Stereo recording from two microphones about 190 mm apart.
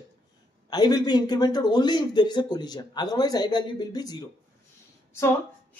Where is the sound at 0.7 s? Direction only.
20° left (ahead or behind).